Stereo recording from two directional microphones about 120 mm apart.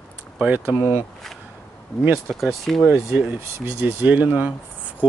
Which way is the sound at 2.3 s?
Centre (ahead or behind).